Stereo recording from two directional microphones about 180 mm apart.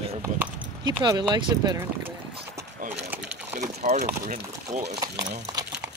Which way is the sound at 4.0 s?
45° right (ahead or behind).